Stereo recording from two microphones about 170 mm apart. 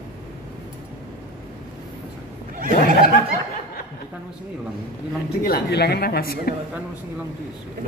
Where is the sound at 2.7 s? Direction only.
55° left (ahead or behind).